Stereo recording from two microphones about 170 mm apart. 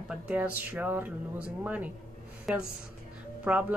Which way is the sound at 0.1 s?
5° right (ahead or behind).